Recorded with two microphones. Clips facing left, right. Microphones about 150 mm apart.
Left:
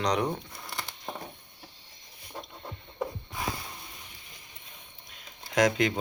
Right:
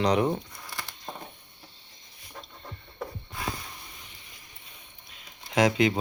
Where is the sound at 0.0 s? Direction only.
5° right (ahead or behind).